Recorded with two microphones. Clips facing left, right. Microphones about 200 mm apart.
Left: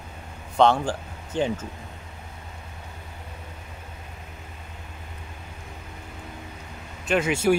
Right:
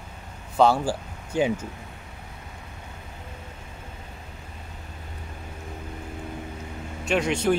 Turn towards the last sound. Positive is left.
turn(degrees=5)  # may be behind; listen again after turning